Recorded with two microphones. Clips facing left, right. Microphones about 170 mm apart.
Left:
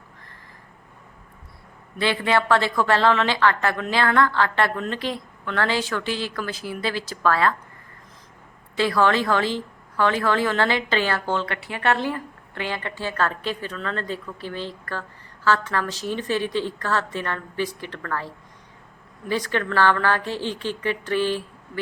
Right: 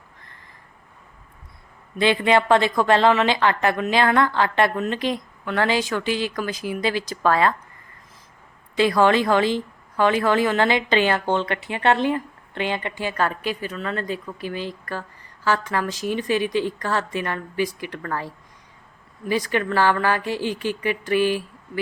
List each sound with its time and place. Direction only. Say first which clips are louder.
2.0 s a woman's voice: right 3 dB; 20° right (ahead or behind)
8.7 s a woman's voice: right 3 dB; 15° right (ahead or behind)